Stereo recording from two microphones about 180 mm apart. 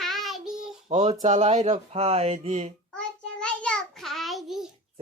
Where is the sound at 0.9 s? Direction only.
40° right (ahead or behind).